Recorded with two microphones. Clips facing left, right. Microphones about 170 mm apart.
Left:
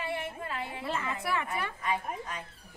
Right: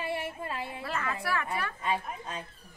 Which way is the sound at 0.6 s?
20° left (ahead or behind).